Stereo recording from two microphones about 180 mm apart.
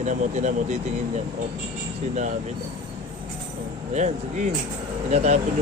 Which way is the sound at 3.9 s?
40° right (ahead or behind).